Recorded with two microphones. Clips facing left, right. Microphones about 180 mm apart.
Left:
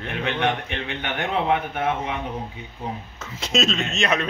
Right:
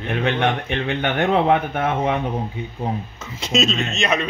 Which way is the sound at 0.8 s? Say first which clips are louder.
Right 9 dB; 75° right (ahead or behind).